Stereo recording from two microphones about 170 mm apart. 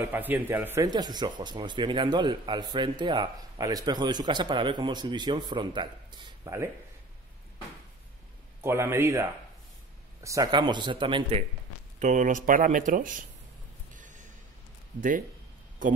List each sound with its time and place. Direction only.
0.1 s speech: 10° right (ahead or behind)
0.8 s speech: 25° right (ahead or behind)
8.6 s speech: 15° right (ahead or behind); by 11.4 s 30° right (ahead or behind)
12.0 s speech: 50° right (ahead or behind)
13.9 s gasp: 50° right (ahead or behind)
15.0 s speech: 50° right (ahead or behind)